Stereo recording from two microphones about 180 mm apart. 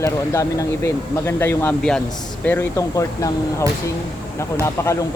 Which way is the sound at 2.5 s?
15° left (ahead or behind).